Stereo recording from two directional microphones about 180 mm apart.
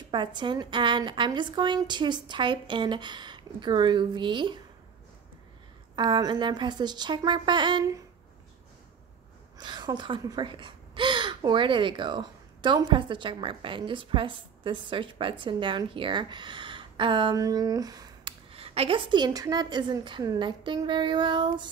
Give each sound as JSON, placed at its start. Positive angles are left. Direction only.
{"t": 0.1, "sound": "speech", "side_deg": -25}
{"t": 5.9, "sound": "speech", "side_deg": -25}
{"t": 9.6, "sound": "speech", "side_deg": -25}